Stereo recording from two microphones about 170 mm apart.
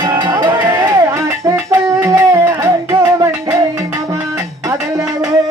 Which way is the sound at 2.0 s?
20° right (ahead or behind).